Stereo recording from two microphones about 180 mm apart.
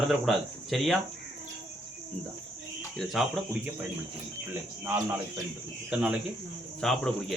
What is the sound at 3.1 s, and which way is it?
Speech, centre (ahead or behind).